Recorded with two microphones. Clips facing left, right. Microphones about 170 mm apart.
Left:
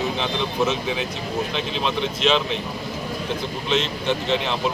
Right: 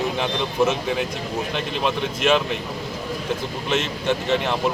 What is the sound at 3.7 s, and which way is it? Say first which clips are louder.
Speech: even; 10° right (ahead or behind).